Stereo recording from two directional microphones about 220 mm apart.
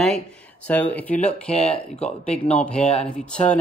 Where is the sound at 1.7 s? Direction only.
30° left (ahead or behind).